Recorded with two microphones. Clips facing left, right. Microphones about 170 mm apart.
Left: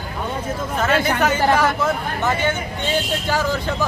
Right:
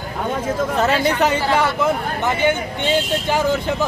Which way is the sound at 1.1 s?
30° right (ahead or behind).